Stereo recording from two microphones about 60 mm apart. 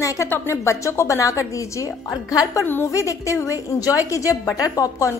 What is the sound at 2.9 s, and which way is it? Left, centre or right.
A woman's voice, left.